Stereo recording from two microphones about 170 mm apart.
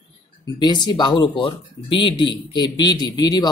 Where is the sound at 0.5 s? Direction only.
25° left (ahead or behind).